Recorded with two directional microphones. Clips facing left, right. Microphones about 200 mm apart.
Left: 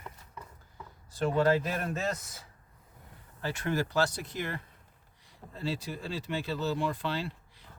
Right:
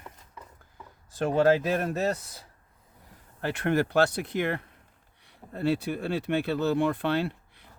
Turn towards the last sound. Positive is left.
turn(degrees=-60)  # may be behind; listen again after turning